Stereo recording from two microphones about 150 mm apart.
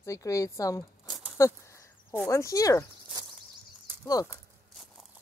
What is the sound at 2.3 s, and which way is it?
Speech, 20° left (ahead or behind).